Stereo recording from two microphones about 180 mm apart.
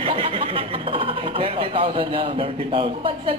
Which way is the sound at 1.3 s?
30° right (ahead or behind).